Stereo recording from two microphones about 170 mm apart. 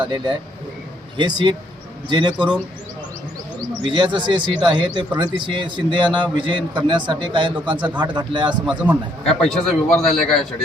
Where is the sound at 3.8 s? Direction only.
30° right (ahead or behind).